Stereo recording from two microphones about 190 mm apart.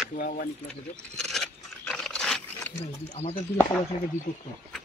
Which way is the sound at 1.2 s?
5° left (ahead or behind).